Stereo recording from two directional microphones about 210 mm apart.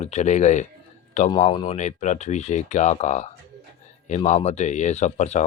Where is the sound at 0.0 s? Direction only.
30° left (ahead or behind).